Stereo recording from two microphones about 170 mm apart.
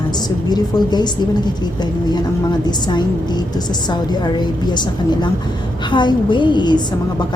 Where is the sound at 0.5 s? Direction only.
25° left (ahead or behind).